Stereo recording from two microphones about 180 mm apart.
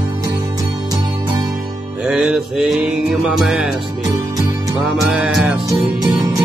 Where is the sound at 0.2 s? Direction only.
20° right (ahead or behind).